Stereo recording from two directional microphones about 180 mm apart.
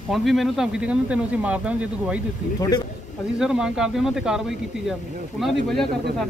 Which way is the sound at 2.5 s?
20° left (ahead or behind).